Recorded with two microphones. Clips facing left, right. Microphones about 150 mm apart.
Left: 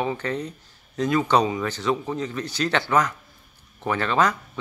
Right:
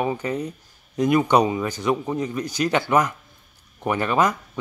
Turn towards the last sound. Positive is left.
turn(degrees=-10)  # may be behind; listen again after turning